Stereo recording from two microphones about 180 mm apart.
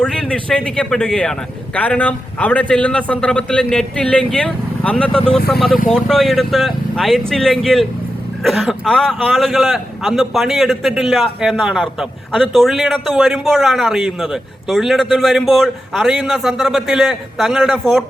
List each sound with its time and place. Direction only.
0.0 s a man's voice: 5° left (ahead or behind)